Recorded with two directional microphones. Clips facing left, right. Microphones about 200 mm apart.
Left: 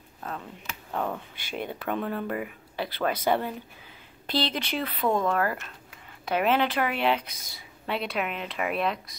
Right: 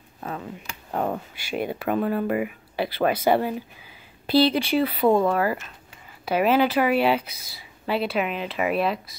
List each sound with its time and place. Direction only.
0.2 s speech: 5° right (ahead or behind)
0.9 s speech: 35° right (ahead or behind)
1.3 s speech: 10° right (ahead or behind)